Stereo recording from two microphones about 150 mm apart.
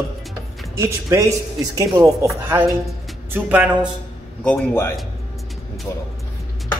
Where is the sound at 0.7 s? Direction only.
20° right (ahead or behind).